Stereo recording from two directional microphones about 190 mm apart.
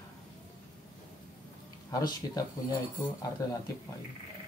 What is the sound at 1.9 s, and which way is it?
Speech, 20° left (ahead or behind).